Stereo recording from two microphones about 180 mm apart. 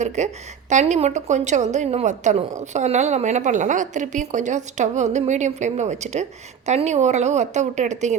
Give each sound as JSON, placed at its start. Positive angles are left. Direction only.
{"t": 0.2, "sound": "a woman's voice", "side_deg": -40}